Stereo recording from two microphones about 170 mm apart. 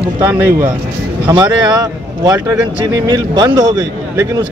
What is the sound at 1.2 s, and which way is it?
A man's voice, 25° right (ahead or behind).